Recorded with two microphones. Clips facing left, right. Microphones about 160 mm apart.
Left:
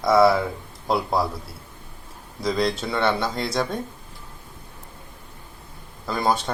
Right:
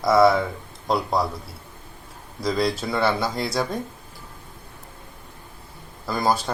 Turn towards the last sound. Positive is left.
turn(degrees=0)  # may be behind; listen again after turning